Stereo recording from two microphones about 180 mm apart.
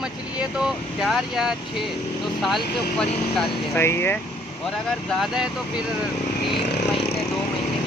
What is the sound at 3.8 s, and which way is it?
Speech, 15° left (ahead or behind).